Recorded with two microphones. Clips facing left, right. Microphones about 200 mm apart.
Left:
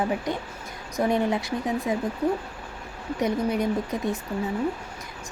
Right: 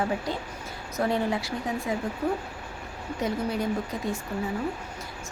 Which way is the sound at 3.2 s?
20° left (ahead or behind).